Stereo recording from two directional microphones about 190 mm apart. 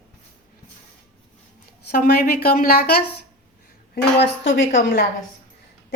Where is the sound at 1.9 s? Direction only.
55° left (ahead or behind).